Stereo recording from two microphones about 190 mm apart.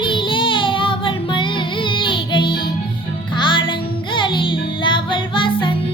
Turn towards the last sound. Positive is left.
turn(degrees=25)  # may be behind; listen again after turning